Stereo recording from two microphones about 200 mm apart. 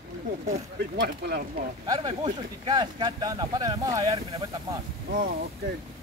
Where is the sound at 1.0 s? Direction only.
55° right (ahead or behind).